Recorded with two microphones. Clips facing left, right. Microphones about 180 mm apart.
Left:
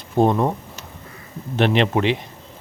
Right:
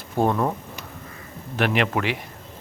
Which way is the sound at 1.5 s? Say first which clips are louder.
Left 4 dB; 25° left (ahead or behind).